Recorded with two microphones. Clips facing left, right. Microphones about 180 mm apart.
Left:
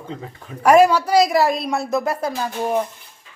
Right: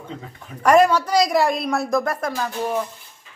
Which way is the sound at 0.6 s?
5° left (ahead or behind).